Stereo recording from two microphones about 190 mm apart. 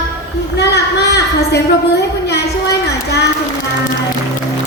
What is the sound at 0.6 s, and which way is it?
A woman's voice, 60° left (ahead or behind).